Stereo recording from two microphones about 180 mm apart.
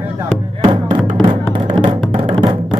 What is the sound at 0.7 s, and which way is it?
Music, 25° right (ahead or behind).